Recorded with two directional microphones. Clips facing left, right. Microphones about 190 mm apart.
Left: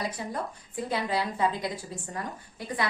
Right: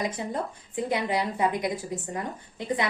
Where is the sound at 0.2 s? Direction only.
20° right (ahead or behind).